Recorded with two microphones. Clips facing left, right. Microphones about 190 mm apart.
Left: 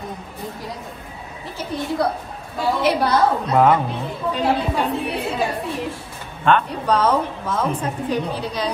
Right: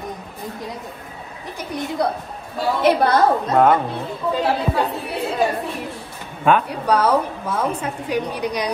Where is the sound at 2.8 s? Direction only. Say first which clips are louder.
Right 4 dB; 55° right (ahead or behind).